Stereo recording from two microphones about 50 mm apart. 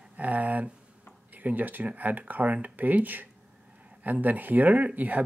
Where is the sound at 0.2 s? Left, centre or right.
Right.